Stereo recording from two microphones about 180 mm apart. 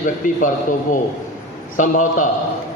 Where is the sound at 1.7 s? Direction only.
45° left (ahead or behind).